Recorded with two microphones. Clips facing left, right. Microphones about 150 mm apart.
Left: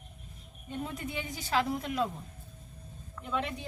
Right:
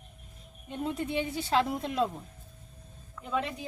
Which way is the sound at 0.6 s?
25° right (ahead or behind).